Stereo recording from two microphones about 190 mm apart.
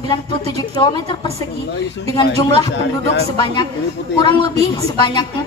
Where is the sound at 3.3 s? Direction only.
25° left (ahead or behind).